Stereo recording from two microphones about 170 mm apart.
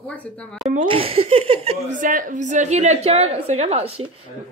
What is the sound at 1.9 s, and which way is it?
A woman's voice, 50° right (ahead or behind).